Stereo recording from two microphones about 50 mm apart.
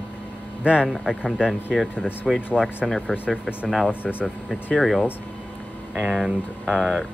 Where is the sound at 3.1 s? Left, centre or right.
Centre.